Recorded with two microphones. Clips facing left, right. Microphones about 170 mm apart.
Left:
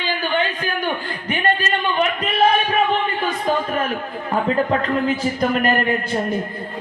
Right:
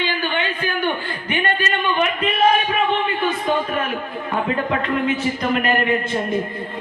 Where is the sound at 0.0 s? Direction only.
40° left (ahead or behind).